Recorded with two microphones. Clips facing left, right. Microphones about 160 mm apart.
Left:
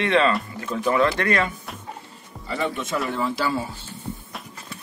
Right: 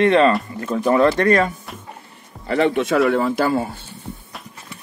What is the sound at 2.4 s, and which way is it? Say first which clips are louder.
Speech: right 9 dB; 70° right (ahead or behind).